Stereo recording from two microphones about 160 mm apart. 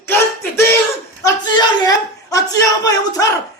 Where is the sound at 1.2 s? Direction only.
25° left (ahead or behind).